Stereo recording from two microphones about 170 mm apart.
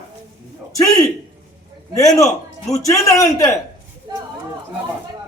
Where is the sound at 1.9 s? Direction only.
20° left (ahead or behind).